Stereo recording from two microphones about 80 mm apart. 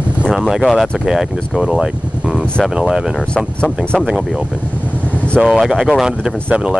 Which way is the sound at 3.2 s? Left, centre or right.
Centre.